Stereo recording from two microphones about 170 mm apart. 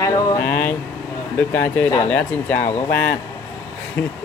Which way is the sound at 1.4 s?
10° left (ahead or behind).